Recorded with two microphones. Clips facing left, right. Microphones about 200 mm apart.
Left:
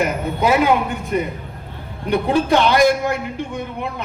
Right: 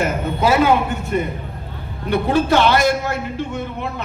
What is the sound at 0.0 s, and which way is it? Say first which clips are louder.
Speech: even; 15° left (ahead or behind).